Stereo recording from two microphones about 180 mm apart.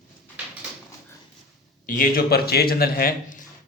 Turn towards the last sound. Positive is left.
turn(degrees=50)  # may be behind; listen again after turning